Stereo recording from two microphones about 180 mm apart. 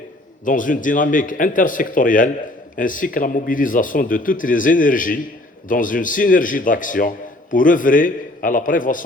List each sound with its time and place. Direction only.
0.4 s speech: 45° left (ahead or behind)